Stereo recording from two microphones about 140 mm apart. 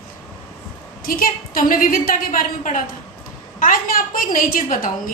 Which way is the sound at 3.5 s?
85° left.